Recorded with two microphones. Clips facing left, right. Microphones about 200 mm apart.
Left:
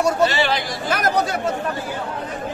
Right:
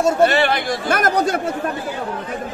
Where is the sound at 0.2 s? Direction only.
55° right (ahead or behind).